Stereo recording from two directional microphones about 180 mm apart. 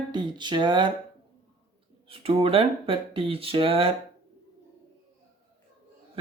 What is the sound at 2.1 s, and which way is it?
Speech, 30° right (ahead or behind).